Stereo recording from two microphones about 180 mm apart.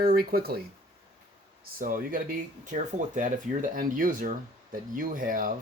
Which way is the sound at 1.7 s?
50° right (ahead or behind).